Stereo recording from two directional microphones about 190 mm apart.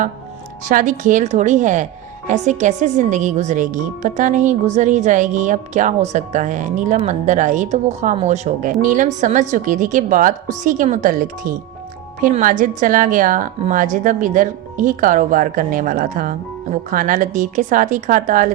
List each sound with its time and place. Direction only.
0.6 s a woman's voice: 45° right (ahead or behind)